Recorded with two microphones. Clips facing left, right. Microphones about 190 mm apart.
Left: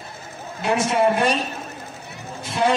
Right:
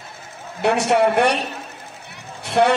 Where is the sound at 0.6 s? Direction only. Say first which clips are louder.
Right 2 dB; 70° right (ahead or behind).